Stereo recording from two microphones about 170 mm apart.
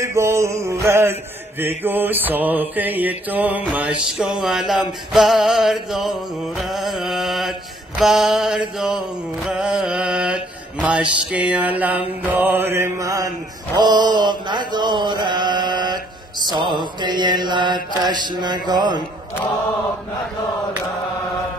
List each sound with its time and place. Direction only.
0.0 s mantra: 15° right (ahead or behind)